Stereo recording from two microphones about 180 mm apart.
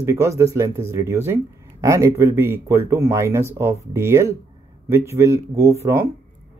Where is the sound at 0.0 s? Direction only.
15° right (ahead or behind).